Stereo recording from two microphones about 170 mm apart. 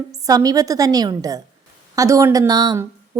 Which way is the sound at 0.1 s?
20° right (ahead or behind).